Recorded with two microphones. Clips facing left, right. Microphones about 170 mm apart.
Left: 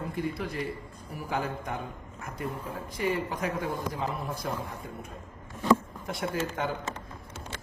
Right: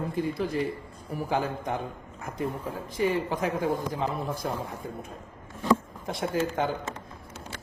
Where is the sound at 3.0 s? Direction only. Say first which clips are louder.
Right 4 dB; 25° right (ahead or behind).